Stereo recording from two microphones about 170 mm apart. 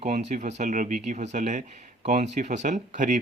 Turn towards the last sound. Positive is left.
turn(degrees=-50)  # may be behind; listen again after turning